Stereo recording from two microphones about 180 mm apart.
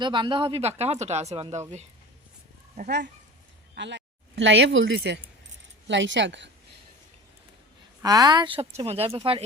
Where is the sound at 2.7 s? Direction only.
50° right (ahead or behind).